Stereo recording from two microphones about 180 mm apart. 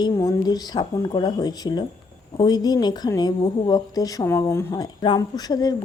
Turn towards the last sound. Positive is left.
turn(degrees=20)  # may be behind; listen again after turning